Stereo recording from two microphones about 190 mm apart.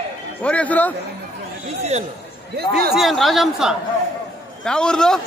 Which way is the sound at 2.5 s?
55° right (ahead or behind).